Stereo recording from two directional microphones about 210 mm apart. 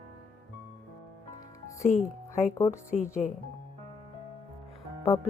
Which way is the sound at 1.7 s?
35° left (ahead or behind).